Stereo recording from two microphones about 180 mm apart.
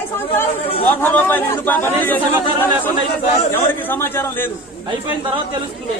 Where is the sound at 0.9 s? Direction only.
10° left (ahead or behind).